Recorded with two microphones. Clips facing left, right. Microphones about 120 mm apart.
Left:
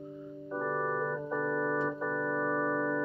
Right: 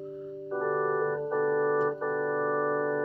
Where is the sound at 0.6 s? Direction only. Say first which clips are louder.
Right 5 dB; 25° right (ahead or behind).